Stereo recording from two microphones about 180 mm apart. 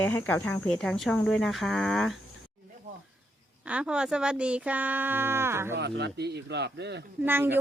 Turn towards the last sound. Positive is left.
turn(degrees=-10)  # may be behind; listen again after turning